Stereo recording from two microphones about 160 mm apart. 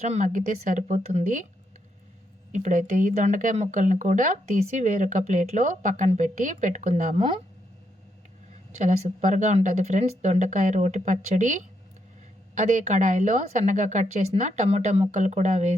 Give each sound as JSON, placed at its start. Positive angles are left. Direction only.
{"t": 0.0, "sound": "a woman's voice", "side_deg": -50}
{"t": 2.5, "sound": "a woman's voice", "side_deg": -50}
{"t": 8.7, "sound": "a woman's voice", "side_deg": -45}